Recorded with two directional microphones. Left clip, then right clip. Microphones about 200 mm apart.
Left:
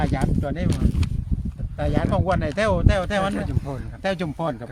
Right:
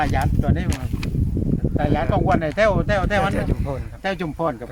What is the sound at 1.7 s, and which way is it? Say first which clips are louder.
Speech: right 2 dB; 40° left (ahead or behind).